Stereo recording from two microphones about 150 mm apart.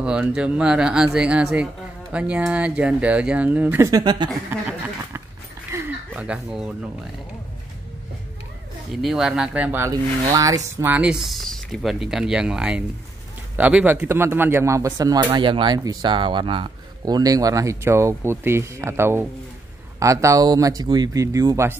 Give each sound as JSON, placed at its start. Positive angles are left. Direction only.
{"t": 0.0, "sound": "speech", "side_deg": -5}
{"t": 4.5, "sound": "a sound", "side_deg": -15}
{"t": 8.9, "sound": "speech", "side_deg": 0}
{"t": 10.9, "sound": "speech", "side_deg": -5}